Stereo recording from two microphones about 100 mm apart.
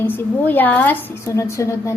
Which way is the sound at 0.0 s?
20° left (ahead or behind).